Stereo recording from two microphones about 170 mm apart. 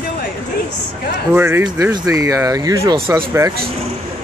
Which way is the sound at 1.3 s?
15° right (ahead or behind).